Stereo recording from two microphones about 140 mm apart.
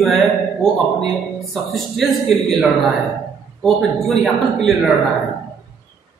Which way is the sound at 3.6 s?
5° left (ahead or behind).